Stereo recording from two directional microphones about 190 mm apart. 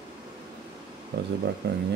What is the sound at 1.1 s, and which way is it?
Speech, 55° right (ahead or behind).